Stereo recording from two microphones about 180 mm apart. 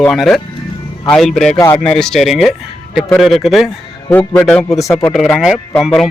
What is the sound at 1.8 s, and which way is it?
Speech, 5° left (ahead or behind).